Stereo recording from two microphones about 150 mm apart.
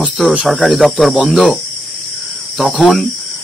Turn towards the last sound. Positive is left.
turn(degrees=0)  # may be behind; listen again after turning